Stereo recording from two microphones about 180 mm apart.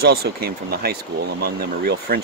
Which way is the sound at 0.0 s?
60° right (ahead or behind).